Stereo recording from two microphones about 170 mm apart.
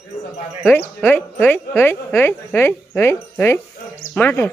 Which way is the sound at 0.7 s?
10° left (ahead or behind).